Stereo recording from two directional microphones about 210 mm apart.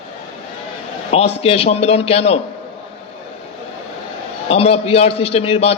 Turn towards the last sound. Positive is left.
turn(degrees=30)  # may be behind; listen again after turning